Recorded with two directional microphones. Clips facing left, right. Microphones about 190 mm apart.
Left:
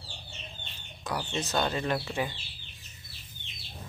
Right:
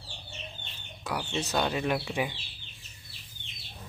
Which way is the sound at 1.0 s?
10° right (ahead or behind).